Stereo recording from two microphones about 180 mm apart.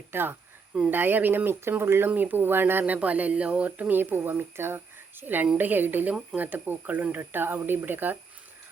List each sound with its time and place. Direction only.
0.1 s speech: 10° right (ahead or behind)